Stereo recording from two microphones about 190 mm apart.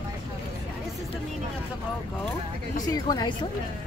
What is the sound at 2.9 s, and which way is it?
Speech, 20° left (ahead or behind).